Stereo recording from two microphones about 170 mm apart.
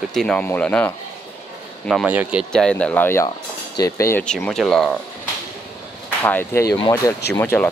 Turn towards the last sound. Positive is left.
turn(degrees=15)  # may be behind; listen again after turning